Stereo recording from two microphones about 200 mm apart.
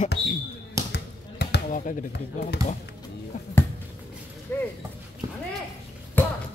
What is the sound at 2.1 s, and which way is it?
Speech, 60° left (ahead or behind).